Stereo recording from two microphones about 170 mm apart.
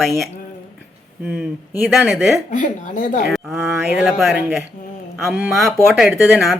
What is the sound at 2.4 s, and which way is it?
Speech, 50° left (ahead or behind).